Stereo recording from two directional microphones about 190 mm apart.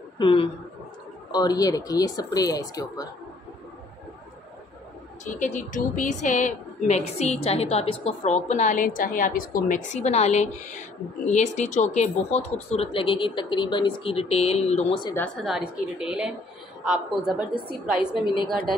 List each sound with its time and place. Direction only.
0.2 s speech: 30° left (ahead or behind)
5.2 s a woman's voice: 40° left (ahead or behind)
15.1 s a woman's voice: 5° left (ahead or behind)
18.1 s speech: 25° left (ahead or behind)